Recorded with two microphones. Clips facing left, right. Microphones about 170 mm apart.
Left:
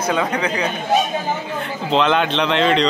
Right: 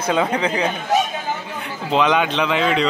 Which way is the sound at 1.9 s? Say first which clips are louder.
Even; 10° right (ahead or behind).